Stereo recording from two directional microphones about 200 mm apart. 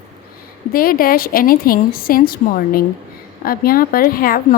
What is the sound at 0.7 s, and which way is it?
A woman's voice, 45° left (ahead or behind).